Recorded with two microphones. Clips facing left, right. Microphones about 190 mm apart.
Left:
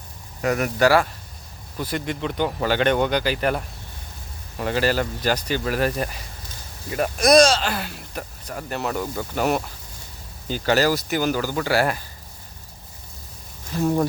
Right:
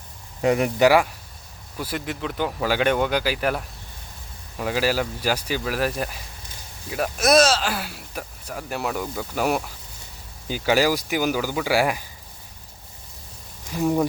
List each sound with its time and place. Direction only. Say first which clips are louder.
0.4 s speech: right 2 dB; 20° right (ahead or behind)
13.7 s speech: even; 5° right (ahead or behind)